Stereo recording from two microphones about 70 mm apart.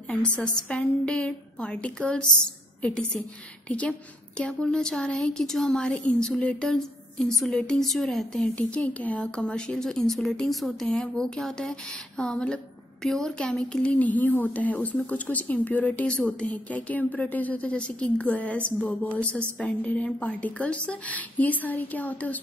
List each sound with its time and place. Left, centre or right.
0.1 s speech: centre
8.5 s speech: centre